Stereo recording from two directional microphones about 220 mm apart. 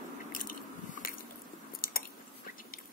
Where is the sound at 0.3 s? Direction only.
40° left (ahead or behind).